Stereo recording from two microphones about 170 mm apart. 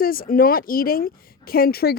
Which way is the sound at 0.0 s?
60° left (ahead or behind).